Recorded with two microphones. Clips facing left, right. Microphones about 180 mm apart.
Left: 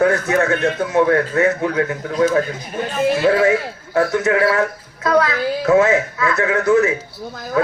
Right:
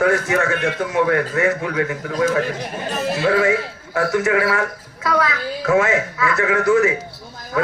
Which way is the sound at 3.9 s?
20° left (ahead or behind).